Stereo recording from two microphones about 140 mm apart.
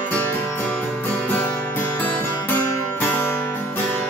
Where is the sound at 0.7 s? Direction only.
10° left (ahead or behind).